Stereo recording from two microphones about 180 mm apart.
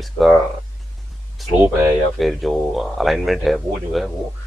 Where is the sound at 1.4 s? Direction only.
Centre (ahead or behind).